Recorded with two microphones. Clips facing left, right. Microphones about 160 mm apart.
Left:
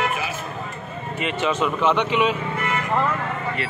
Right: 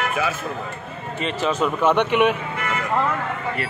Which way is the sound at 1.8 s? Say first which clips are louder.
Right 3 dB; 55° right (ahead or behind).